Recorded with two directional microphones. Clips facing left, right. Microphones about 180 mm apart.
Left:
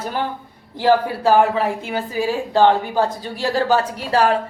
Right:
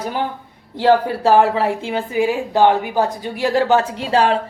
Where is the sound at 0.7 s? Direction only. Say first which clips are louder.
Right 2 dB; 25° right (ahead or behind).